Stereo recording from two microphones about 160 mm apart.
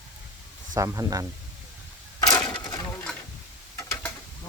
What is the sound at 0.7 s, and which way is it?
Speech, 20° right (ahead or behind).